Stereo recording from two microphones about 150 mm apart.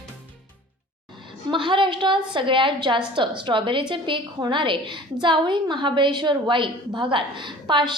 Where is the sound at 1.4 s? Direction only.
35° right (ahead or behind).